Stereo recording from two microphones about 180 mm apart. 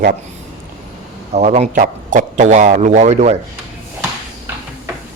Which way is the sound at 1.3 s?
40° right (ahead or behind).